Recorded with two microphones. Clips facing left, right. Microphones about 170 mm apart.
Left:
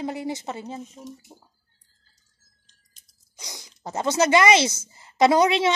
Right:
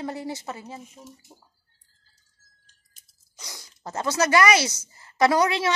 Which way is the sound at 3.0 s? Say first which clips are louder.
Left 1 dB; 5° right (ahead or behind).